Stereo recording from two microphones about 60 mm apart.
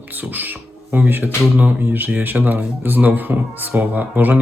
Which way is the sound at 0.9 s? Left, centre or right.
Right.